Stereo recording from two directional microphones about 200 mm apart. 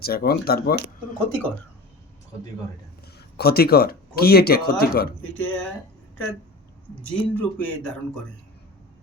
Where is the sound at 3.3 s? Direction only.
50° left (ahead or behind).